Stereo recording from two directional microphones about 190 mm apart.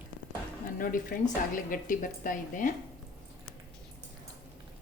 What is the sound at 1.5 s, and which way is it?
Speech, 45° left (ahead or behind).